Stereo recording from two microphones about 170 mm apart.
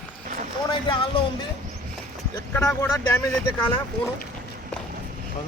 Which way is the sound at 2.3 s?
15° left (ahead or behind).